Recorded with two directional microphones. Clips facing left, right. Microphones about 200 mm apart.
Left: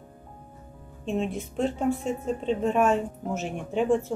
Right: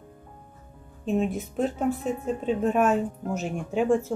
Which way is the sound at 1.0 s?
5° right (ahead or behind).